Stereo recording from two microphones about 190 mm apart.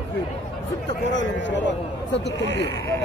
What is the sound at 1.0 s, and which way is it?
A man's voice, 75° left (ahead or behind).